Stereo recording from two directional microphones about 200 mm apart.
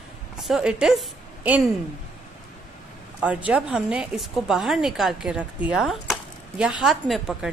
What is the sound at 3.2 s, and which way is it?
Speech, 5° right (ahead or behind).